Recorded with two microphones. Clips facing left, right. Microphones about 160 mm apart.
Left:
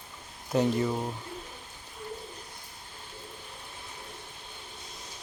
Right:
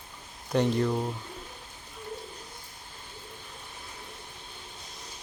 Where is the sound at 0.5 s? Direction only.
5° left (ahead or behind).